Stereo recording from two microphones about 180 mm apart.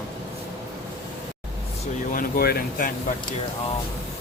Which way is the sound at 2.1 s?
55° left (ahead or behind).